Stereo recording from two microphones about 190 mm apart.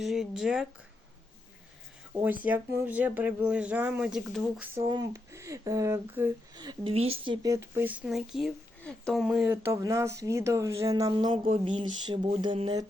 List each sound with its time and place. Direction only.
0.0 s speech: centre (ahead or behind)
2.1 s speech: 10° right (ahead or behind)
4.9 s speech: 20° right (ahead or behind)
6.5 s a sound: 20° right (ahead or behind)
7.4 s speech: 15° right (ahead or behind); by 9.2 s 5° left (ahead or behind)
9.2 s speech: 5° right (ahead or behind); by 11.3 s 20° right (ahead or behind)
11.5 s a sound: 25° right (ahead or behind)